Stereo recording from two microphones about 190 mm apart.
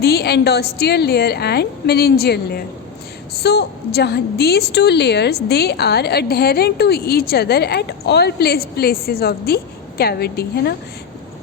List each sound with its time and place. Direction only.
0.0 s a woman's voice: 55° left (ahead or behind)